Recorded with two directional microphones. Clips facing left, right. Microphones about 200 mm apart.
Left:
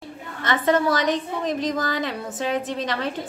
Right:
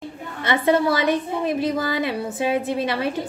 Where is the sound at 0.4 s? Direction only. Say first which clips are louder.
Right 2 dB; 10° right (ahead or behind).